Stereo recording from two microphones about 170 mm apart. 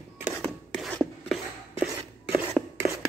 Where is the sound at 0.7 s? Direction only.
Centre (ahead or behind).